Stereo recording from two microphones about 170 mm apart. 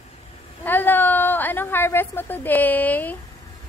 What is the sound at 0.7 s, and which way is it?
A woman's voice, 10° left (ahead or behind).